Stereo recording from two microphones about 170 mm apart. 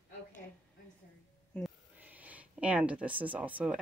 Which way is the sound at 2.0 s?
10° right (ahead or behind).